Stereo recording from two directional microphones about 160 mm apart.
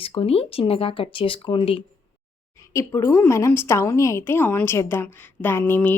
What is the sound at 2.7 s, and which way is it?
A woman's voice, 20° left (ahead or behind).